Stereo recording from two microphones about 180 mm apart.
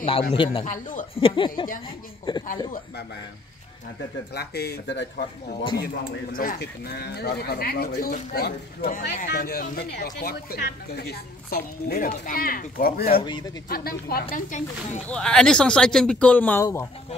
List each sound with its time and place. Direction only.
0.3 s speech: 30° left (ahead or behind)
0.7 s speech: 45° left (ahead or behind)
1.1 s speech: 30° left (ahead or behind)
4.3 s speech: 65° left (ahead or behind)
5.5 s speech: 30° left (ahead or behind)
6.3 s speech: 55° left (ahead or behind)
13.2 s speech: 25° left (ahead or behind)
13.7 s speech: 55° left (ahead or behind)
14.3 s speech: 45° left (ahead or behind)
15.0 s speech: 5° left (ahead or behind)